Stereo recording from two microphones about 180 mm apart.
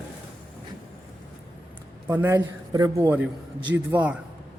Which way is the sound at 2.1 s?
10° right (ahead or behind).